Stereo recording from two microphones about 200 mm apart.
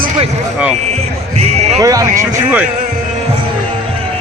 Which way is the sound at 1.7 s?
15° right (ahead or behind).